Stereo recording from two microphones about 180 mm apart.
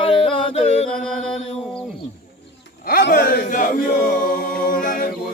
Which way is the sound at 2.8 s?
55° left (ahead or behind).